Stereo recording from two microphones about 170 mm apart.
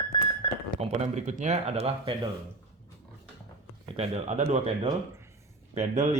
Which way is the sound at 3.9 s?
40° right (ahead or behind).